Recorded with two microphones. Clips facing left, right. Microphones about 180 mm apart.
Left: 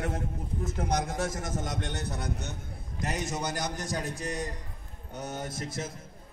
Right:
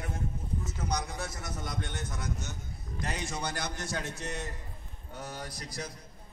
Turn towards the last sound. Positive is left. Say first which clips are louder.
# left 5 dB
turn(degrees=25)  # may be behind; listen again after turning